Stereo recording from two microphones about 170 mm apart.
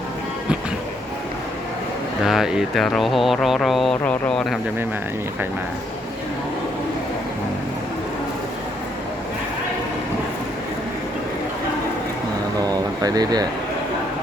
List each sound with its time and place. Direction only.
2.2 s speech: centre (ahead or behind)
12.5 s speech: 20° right (ahead or behind)